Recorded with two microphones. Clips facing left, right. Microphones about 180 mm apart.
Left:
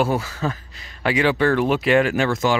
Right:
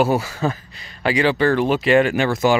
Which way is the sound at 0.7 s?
Centre (ahead or behind).